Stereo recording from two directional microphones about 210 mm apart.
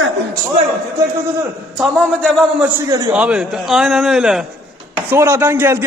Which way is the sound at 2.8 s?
15° right (ahead or behind).